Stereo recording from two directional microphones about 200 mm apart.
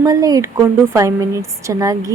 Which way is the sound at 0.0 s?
20° right (ahead or behind).